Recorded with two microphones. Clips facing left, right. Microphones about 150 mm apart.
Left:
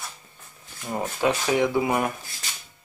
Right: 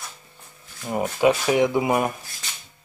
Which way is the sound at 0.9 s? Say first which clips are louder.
Right 5 dB; 10° right (ahead or behind).